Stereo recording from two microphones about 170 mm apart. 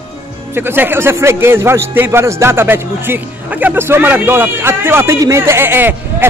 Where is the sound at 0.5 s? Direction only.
10° right (ahead or behind).